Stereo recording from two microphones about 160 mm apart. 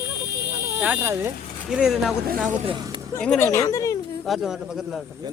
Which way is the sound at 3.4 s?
20° left (ahead or behind).